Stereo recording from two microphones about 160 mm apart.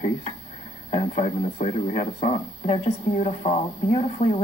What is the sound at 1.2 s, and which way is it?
Speech, 45° left (ahead or behind).